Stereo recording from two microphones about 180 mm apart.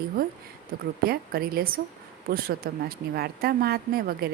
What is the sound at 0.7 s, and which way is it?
A woman's voice, 60° right (ahead or behind).